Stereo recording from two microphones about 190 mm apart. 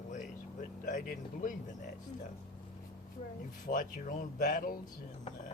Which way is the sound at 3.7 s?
45° left (ahead or behind).